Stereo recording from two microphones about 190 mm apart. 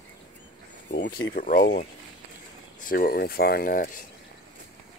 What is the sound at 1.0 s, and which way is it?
Speech, 60° left (ahead or behind).